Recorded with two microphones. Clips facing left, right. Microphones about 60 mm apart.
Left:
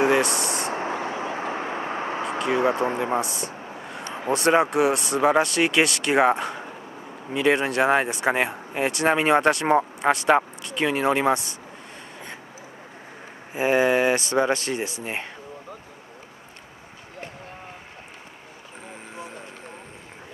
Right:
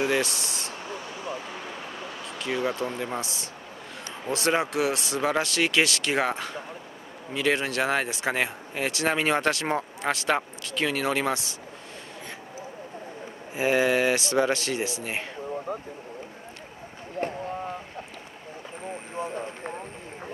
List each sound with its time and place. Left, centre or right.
0.3 s a sound: left
0.7 s vehicle: left
2.3 s speech: left
3.2 s speech: centre
4.3 s speech: centre
4.9 s speech: centre
5.2 s speech: centre
7.3 s speech: centre
13.6 s speech: centre
19.1 s vehicle: right